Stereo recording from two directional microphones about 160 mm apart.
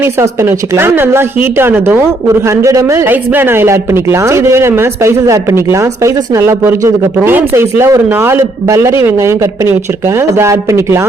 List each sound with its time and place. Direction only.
0.0 s a man's voice: 15° right (ahead or behind)